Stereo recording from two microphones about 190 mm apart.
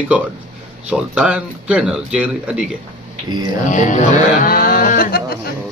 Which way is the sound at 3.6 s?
40° left (ahead or behind).